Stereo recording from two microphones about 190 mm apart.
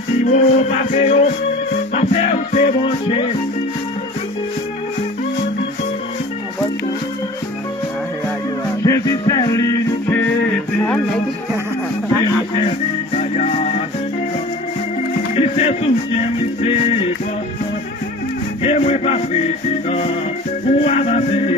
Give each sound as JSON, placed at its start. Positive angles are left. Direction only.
{"t": 0.2, "sound": "music", "side_deg": 35}
{"t": 8.8, "sound": "music", "side_deg": 20}
{"t": 12.5, "sound": "music", "side_deg": 35}
{"t": 15.3, "sound": "music", "side_deg": 35}
{"t": 18.6, "sound": "music", "side_deg": 35}